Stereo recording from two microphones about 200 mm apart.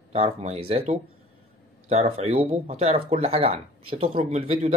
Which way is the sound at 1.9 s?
30° right (ahead or behind).